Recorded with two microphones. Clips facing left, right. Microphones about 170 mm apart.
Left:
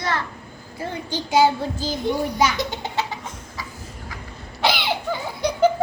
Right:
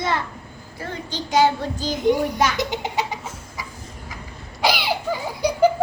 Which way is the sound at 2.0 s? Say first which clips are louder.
Right 2 dB; 15° right (ahead or behind).